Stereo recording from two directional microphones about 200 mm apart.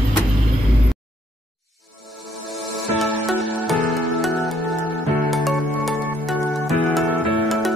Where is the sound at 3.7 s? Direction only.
Centre (ahead or behind).